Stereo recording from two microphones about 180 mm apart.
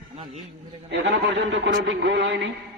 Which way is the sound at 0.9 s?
80° right.